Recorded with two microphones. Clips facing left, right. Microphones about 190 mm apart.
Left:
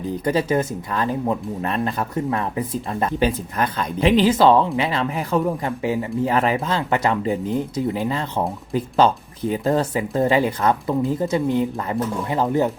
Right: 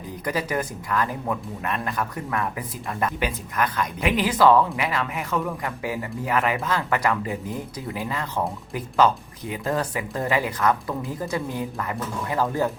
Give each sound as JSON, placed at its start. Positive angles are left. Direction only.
{"t": 0.3, "sound": "speech", "side_deg": 25}